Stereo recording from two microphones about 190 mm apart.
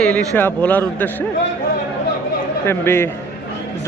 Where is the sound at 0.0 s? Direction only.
5° left (ahead or behind).